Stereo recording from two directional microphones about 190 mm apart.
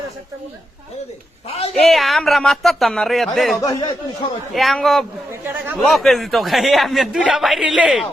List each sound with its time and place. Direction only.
1.7 s a man's voice: centre (ahead or behind)
3.6 s speech: 20° left (ahead or behind)
4.5 s a man's voice: centre (ahead or behind)
5.3 s speech: 10° right (ahead or behind)
5.7 s a man's voice: centre (ahead or behind)